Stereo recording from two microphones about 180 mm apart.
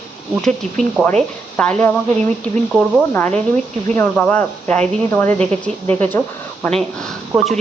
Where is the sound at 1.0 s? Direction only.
5° right (ahead or behind).